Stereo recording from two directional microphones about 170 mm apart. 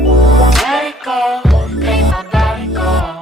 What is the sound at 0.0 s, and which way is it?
Music, centre (ahead or behind).